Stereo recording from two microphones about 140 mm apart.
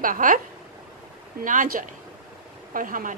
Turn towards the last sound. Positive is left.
turn(degrees=-80)